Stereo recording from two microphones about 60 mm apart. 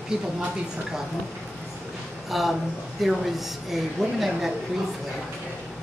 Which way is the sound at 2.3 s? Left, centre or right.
Centre.